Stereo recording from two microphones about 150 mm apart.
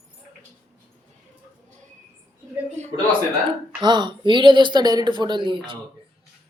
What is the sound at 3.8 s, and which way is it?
Speech, 30° right (ahead or behind).